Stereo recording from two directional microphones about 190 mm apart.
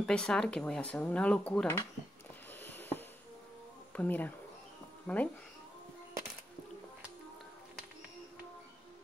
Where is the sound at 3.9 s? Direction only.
10° left (ahead or behind).